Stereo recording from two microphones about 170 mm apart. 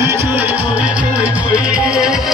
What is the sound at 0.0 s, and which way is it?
Music, 15° right (ahead or behind).